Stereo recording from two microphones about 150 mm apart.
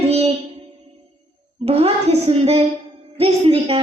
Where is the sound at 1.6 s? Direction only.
40° right (ahead or behind).